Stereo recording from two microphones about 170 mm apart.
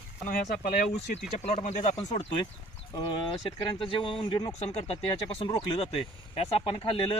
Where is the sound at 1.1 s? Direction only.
40° left (ahead or behind).